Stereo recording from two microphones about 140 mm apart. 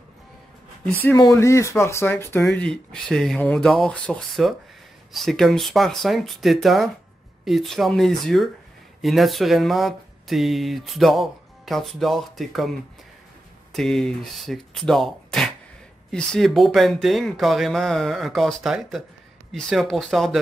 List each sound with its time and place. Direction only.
1.1 s speech: 25° left (ahead or behind); by 12.7 s centre (ahead or behind)
13.7 s speech: 5° left (ahead or behind)